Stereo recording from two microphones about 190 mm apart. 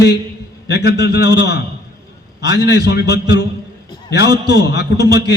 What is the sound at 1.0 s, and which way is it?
Speech, 60° left (ahead or behind).